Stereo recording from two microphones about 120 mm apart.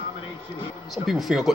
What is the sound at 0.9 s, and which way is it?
Speech, centre (ahead or behind).